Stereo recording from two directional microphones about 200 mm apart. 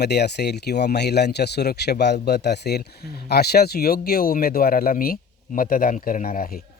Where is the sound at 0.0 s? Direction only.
55° left (ahead or behind).